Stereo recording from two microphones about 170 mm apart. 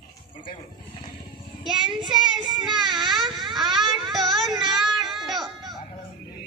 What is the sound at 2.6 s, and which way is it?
Child singing, centre (ahead or behind).